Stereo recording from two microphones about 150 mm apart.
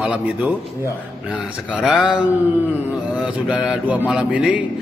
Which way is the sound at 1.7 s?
5° right (ahead or behind).